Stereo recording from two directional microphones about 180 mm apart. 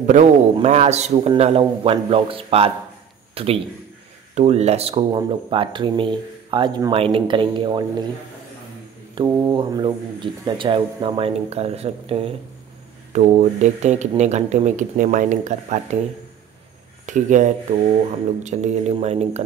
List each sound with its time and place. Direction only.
0.0 s speech: 40° right (ahead or behind); by 7.8 s 25° right (ahead or behind)
9.1 s speech: 25° right (ahead or behind); by 16.0 s 40° right (ahead or behind)
17.0 s speech: 45° right (ahead or behind)